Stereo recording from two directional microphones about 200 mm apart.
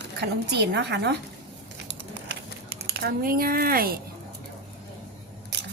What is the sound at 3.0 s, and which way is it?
Speech, 50° right (ahead or behind).